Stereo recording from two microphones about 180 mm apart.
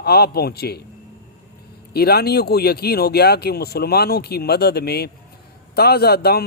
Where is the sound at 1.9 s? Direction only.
60° left (ahead or behind).